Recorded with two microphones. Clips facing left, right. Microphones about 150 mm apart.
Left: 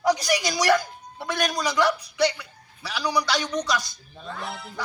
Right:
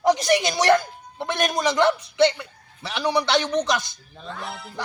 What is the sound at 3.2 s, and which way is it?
Speech, 25° right (ahead or behind).